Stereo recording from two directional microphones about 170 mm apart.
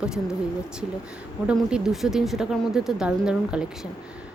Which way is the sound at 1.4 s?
5° right (ahead or behind).